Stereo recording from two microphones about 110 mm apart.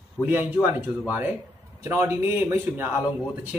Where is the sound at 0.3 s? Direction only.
15° right (ahead or behind).